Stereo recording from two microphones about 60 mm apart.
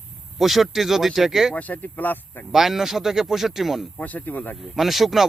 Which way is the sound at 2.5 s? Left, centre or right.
Centre.